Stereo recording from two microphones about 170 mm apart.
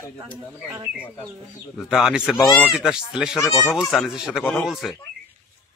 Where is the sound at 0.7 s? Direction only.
15° right (ahead or behind).